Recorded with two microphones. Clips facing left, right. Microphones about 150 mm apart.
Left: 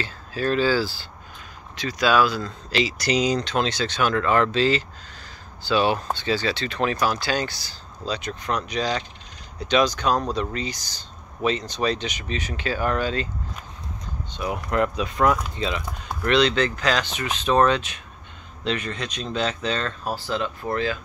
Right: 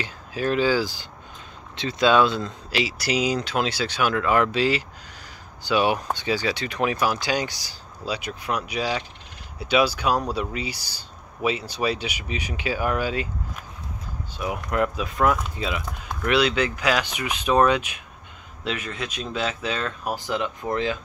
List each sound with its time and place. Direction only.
0.0 s speech: 15° right (ahead or behind)
2.7 s speech: 5° right (ahead or behind)
14.3 s speech: 5° right (ahead or behind); by 21.0 s 20° right (ahead or behind)